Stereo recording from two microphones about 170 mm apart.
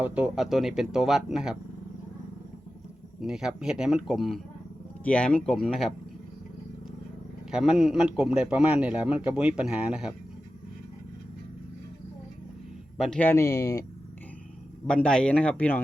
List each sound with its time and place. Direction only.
0.0 s speech: 10° right (ahead or behind)
3.2 s speech: 5° right (ahead or behind)
7.5 s speech: 5° right (ahead or behind)
13.0 s a man's voice: 5° left (ahead or behind)
14.8 s a man's voice: 5° left (ahead or behind)